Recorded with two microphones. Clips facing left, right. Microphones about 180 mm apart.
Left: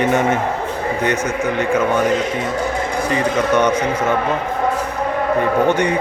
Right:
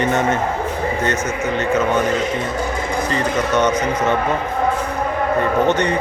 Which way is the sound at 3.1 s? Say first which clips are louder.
Left 4 dB; 10° left (ahead or behind).